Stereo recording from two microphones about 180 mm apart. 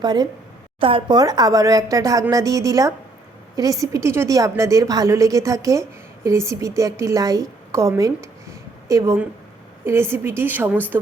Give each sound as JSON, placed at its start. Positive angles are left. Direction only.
{"t": 0.0, "sound": "a woman's voice", "side_deg": -25}